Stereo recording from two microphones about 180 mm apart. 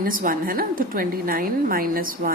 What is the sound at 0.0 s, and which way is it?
A woman's voice, 50° right (ahead or behind).